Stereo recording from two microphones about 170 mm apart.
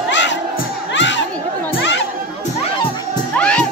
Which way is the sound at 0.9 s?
90° left.